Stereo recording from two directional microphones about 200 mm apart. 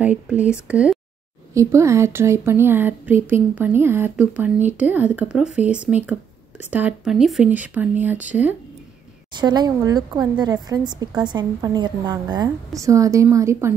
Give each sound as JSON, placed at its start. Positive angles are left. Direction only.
{"t": 0.0, "sound": "speech", "side_deg": -5}
{"t": 9.3, "sound": "a woman's voice", "side_deg": -20}